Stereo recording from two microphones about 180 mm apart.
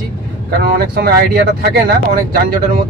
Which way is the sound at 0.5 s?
55° right (ahead or behind).